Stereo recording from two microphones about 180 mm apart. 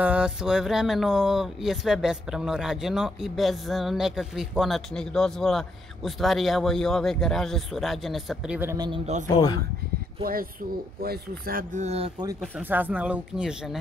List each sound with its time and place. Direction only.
0.0 s speech: 5° right (ahead or behind)
8.7 s speech: 25° right (ahead or behind)
11.0 s speech: 55° right (ahead or behind); by 12.1 s 35° right (ahead or behind)
12.4 s speech: 5° right (ahead or behind)